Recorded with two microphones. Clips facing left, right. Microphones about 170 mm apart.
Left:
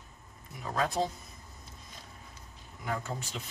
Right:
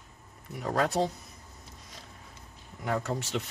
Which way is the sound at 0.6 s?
70° right (ahead or behind).